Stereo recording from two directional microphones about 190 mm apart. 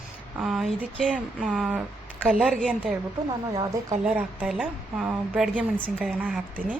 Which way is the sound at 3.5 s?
20° right (ahead or behind).